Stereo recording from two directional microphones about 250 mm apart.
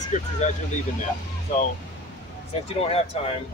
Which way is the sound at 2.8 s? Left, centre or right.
Left.